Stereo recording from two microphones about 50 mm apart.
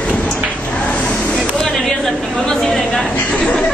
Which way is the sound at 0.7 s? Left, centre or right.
Left.